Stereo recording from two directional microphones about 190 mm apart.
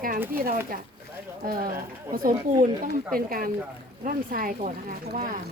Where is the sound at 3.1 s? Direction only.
50° right (ahead or behind).